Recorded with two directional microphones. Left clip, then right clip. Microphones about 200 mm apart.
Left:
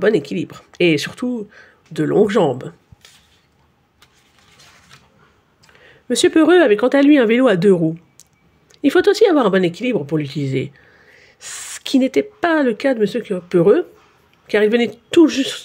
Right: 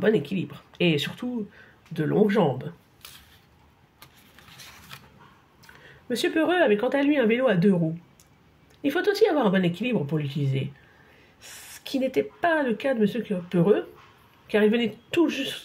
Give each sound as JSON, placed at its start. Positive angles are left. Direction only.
{"t": 0.0, "sound": "speech", "side_deg": 55}
{"t": 6.0, "sound": "speech", "side_deg": 50}
{"t": 8.8, "sound": "speech", "side_deg": 55}